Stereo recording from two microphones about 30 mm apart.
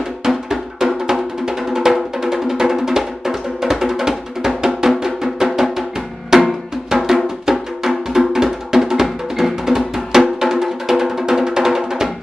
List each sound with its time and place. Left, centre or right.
0.5 s music: centre
6.3 s drum: centre
7.5 s music: centre